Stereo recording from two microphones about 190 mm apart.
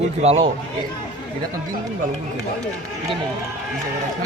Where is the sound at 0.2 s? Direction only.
35° right (ahead or behind).